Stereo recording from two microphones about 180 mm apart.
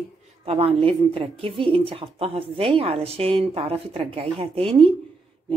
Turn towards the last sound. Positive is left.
turn(degrees=-30)  # may be behind; listen again after turning